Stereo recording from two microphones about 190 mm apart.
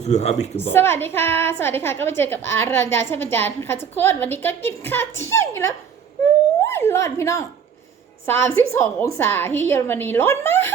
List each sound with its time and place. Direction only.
0.0 s a woman's voice: 35° left (ahead or behind)
0.7 s a woman's voice: 10° left (ahead or behind)